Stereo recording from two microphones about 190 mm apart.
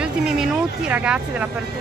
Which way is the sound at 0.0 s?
5° right (ahead or behind).